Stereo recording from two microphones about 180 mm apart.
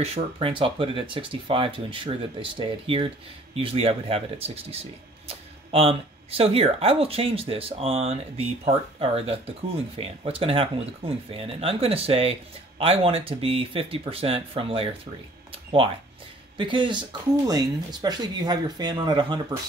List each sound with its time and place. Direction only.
0.0 s speech: 35° right (ahead or behind)